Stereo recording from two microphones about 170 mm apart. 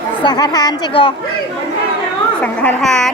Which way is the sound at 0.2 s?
25° left (ahead or behind).